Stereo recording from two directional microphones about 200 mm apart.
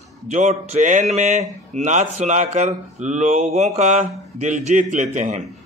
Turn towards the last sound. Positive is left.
turn(degrees=-35)  # may be behind; listen again after turning